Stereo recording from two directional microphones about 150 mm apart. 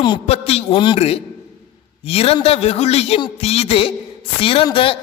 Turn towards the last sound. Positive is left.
turn(degrees=35)  # may be behind; listen again after turning